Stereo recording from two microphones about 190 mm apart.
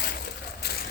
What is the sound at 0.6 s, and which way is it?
Vehicle, 55° left (ahead or behind).